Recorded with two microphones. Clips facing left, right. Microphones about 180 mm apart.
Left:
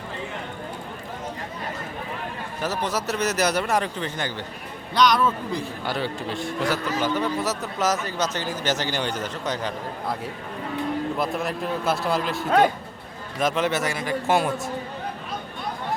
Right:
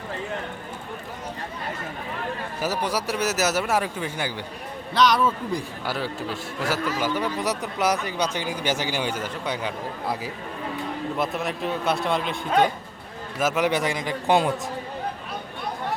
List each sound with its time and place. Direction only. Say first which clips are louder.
2.6 s a man's voice: even; 10° right (ahead or behind)
13.4 s a man's voice: right 1 dB; 10° right (ahead or behind)